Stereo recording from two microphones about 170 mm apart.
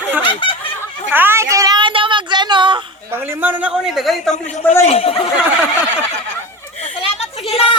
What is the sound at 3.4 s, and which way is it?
Speech, 5° right (ahead or behind).